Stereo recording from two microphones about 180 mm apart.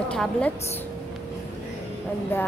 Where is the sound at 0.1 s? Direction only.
5° left (ahead or behind).